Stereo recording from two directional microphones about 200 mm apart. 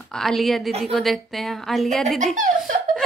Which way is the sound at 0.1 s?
Centre (ahead or behind).